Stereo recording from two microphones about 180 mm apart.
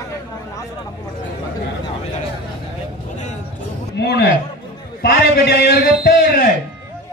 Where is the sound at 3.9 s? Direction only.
65° left (ahead or behind).